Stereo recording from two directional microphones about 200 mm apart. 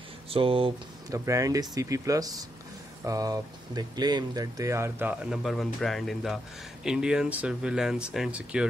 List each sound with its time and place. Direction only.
0.3 s speech: 25° right (ahead or behind)
1.2 s speech: 15° right (ahead or behind)